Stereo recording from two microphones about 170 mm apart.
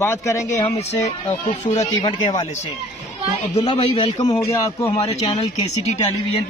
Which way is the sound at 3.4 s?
35° left (ahead or behind).